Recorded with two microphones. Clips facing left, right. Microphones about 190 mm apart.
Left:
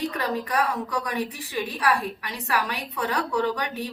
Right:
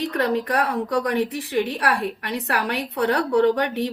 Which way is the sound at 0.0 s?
70° right (ahead or behind).